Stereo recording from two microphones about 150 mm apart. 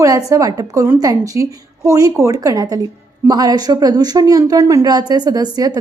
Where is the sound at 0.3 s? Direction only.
25° right (ahead or behind).